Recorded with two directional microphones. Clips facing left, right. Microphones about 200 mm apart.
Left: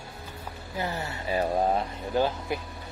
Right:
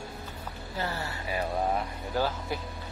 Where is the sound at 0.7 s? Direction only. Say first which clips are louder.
Left 2 dB; 15° left (ahead or behind).